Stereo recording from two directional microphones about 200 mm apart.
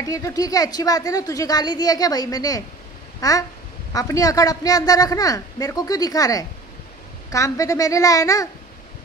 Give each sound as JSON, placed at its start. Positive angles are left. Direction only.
{"t": 0.0, "sound": "a woman's voice", "side_deg": 15}
{"t": 3.2, "sound": "a sound", "side_deg": 15}
{"t": 3.9, "sound": "a man's voice", "side_deg": 15}